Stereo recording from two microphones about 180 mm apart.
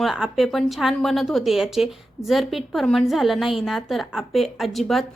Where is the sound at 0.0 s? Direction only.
Centre (ahead or behind).